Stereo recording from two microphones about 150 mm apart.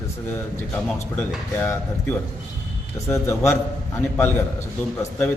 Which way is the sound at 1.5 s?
15° left (ahead or behind).